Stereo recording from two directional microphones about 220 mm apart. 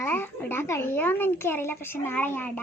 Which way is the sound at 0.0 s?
10° left (ahead or behind).